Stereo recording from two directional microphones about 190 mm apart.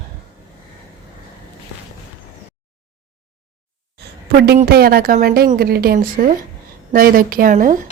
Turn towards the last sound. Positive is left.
turn(degrees=-45)  # may be behind; listen again after turning